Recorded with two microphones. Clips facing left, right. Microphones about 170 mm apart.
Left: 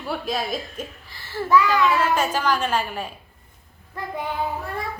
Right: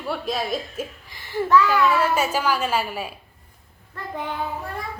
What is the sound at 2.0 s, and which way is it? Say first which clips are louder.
A woman's voice: even; 10° right (ahead or behind).